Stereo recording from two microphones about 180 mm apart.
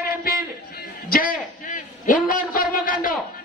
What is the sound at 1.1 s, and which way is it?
A man's voice, 50° left (ahead or behind).